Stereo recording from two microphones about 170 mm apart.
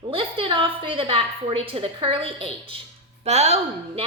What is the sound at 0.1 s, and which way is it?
A woman's voice, 30° right (ahead or behind).